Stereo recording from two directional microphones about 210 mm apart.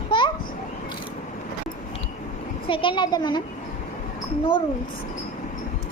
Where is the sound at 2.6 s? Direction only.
25° left (ahead or behind).